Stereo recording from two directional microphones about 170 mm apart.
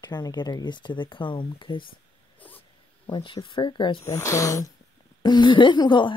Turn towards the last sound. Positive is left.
turn(degrees=25)  # may be behind; listen again after turning